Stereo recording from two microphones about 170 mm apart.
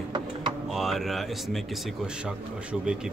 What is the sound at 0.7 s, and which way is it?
Speech, centre (ahead or behind).